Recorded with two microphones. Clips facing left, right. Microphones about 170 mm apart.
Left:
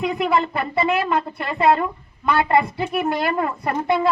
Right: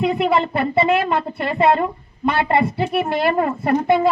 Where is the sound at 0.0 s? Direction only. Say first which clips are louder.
Right 3 dB; 25° right (ahead or behind).